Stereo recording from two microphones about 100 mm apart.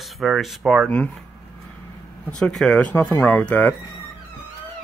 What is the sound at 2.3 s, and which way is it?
Speech, 10° left (ahead or behind).